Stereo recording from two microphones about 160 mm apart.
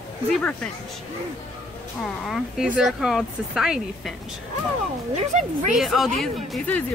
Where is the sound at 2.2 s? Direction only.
Centre (ahead or behind).